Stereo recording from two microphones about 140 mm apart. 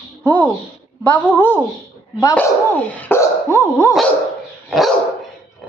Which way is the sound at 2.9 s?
15° left (ahead or behind).